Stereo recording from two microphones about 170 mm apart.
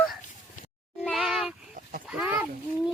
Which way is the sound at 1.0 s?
Centre (ahead or behind).